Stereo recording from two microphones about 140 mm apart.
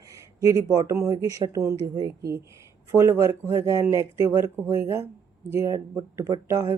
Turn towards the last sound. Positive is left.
turn(degrees=-20)  # may be behind; listen again after turning